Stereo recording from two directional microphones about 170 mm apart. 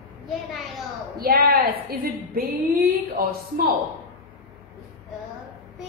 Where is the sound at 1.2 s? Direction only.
60° right (ahead or behind).